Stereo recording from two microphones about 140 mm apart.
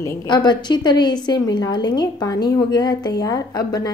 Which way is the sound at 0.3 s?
30° left (ahead or behind).